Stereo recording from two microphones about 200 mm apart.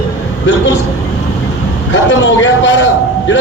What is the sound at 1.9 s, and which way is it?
Speech, 70° left (ahead or behind).